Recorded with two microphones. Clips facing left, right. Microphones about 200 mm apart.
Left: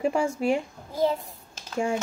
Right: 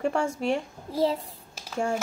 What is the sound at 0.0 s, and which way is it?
Speech, 5° left (ahead or behind).